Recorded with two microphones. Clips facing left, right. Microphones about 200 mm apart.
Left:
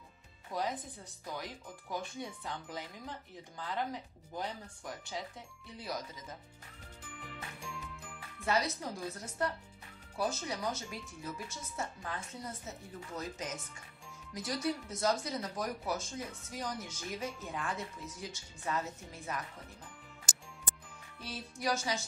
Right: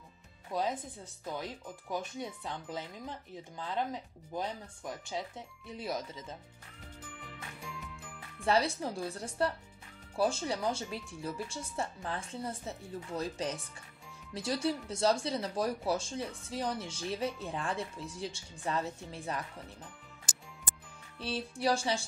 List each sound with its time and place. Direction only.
0.5 s speech: 20° right (ahead or behind)
8.5 s speech: 30° right (ahead or behind)
21.2 s speech: 30° right (ahead or behind)